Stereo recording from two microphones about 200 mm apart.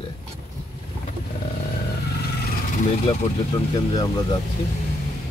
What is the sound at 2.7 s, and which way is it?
Speech, 30° left (ahead or behind).